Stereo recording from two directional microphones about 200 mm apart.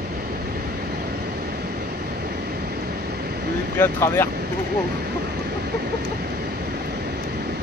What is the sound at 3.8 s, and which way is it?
Speech, 10° left (ahead or behind).